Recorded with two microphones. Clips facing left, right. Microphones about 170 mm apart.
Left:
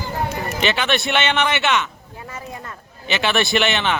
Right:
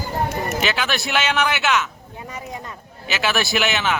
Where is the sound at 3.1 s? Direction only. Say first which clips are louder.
Left 2 dB; 5° right (ahead or behind).